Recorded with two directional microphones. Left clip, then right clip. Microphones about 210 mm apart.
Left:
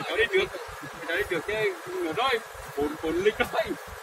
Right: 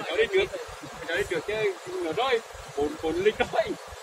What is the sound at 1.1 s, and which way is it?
Speech, 50° left (ahead or behind).